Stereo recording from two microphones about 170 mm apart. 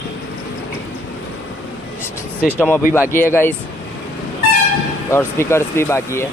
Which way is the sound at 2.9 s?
15° left (ahead or behind).